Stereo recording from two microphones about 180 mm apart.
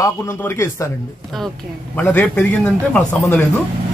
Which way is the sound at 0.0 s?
15° left (ahead or behind).